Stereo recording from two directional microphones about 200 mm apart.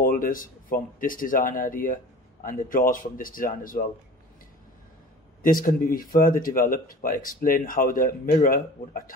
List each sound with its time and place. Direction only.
0.0 s speech: 45° left (ahead or behind)
5.4 s speech: 45° left (ahead or behind)